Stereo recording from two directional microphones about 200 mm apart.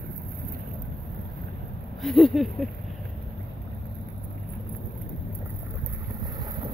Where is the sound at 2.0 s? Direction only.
Centre (ahead or behind).